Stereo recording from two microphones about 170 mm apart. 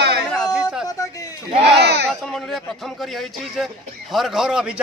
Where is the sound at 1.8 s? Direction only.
80° right.